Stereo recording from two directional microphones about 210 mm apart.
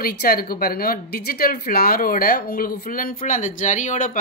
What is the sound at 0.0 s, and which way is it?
Speech, 45° left (ahead or behind).